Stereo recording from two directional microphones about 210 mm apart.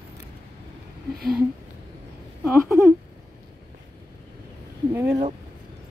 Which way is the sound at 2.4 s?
10° right (ahead or behind).